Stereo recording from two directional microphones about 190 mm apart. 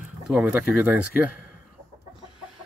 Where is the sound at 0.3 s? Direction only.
5° right (ahead or behind).